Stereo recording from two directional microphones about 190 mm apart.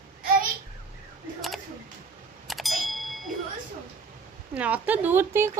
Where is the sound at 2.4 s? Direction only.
Centre (ahead or behind).